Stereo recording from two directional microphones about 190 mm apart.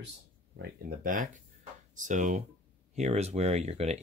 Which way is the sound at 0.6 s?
45° right (ahead or behind).